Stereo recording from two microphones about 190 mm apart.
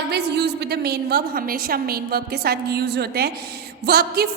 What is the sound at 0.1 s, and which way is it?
A woman's voice, 60° right (ahead or behind).